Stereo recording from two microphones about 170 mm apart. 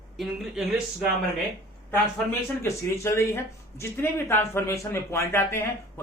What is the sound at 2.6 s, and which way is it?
Speech, 15° left (ahead or behind).